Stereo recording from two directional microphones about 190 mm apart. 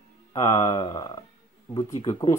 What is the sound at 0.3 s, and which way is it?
Speech, 20° left (ahead or behind).